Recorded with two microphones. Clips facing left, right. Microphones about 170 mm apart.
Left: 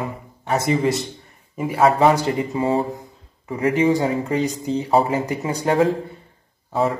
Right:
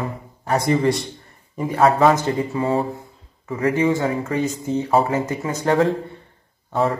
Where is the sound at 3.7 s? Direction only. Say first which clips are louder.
Left 3 dB; 15° left (ahead or behind).